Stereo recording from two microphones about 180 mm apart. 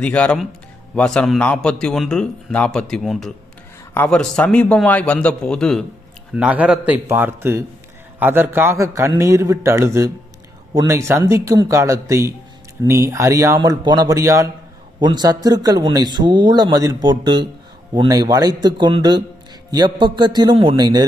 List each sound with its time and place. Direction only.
0.0 s a man's voice: 5° left (ahead or behind)
6.3 s a man's voice: 10° right (ahead or behind)